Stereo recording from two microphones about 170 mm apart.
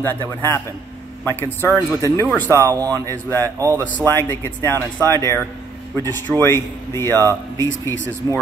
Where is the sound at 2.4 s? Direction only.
15° right (ahead or behind).